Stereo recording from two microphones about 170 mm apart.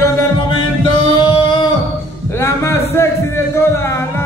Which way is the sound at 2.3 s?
15° left (ahead or behind).